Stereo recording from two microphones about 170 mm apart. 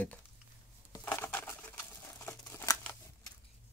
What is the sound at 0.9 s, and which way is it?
Crumpling, 15° left (ahead or behind).